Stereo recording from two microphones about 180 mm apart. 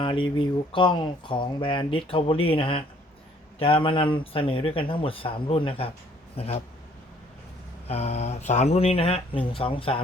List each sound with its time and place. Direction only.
0.0 s speech: 25° left (ahead or behind)
7.9 s speech: 35° left (ahead or behind)